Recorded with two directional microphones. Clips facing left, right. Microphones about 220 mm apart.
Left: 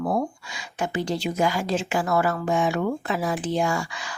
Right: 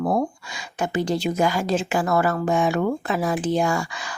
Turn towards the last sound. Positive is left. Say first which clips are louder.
# right 2 dB
turn(degrees=-45)  # may be behind; listen again after turning